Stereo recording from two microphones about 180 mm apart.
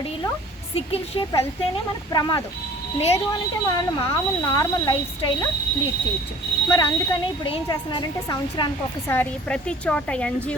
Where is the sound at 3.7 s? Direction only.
25° left (ahead or behind).